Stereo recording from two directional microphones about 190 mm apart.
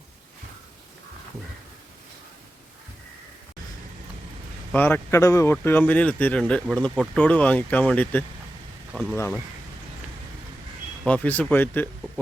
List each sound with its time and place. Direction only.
4.7 s speech: 10° left (ahead or behind)
9.1 s speech: 15° left (ahead or behind)
11.0 s speech: 10° left (ahead or behind)